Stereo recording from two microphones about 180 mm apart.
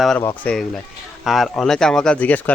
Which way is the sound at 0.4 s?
5° left (ahead or behind).